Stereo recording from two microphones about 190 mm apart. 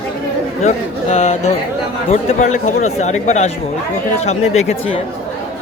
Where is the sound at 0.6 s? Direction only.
35° left (ahead or behind).